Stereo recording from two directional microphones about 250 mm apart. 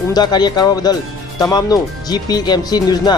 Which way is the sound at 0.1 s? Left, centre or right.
Centre.